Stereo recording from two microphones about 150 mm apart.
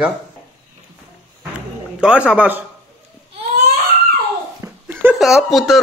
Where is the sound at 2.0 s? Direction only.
5° right (ahead or behind).